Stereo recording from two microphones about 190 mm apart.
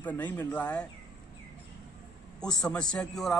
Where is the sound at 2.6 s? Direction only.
5° left (ahead or behind).